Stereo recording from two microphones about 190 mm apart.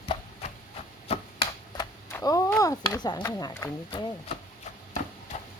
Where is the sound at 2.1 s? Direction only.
15° left (ahead or behind).